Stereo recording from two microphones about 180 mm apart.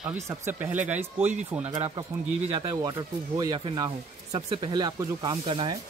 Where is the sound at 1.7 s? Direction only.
25° right (ahead or behind).